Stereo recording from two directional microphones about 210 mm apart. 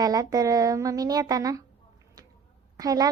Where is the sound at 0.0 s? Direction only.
15° right (ahead or behind).